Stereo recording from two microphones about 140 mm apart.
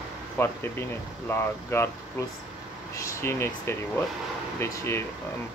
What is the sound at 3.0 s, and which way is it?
Speech, 20° left (ahead or behind).